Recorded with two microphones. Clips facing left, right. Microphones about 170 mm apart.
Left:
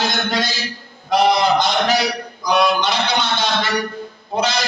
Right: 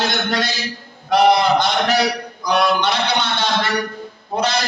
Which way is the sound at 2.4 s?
60° right (ahead or behind).